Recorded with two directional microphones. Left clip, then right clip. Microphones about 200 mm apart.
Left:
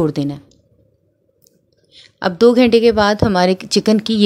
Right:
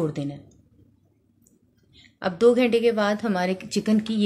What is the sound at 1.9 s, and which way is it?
A woman's voice, 50° left (ahead or behind).